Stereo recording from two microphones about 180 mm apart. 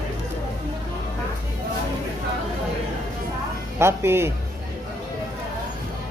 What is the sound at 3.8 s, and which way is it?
Speech, 15° right (ahead or behind).